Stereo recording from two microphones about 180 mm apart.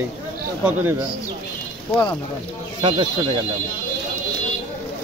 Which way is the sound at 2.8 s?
25° right (ahead or behind).